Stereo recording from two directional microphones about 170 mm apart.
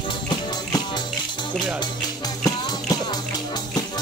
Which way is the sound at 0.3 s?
25° left (ahead or behind).